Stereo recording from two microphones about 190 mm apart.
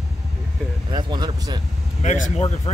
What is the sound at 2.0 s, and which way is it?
Speech, 40° left (ahead or behind).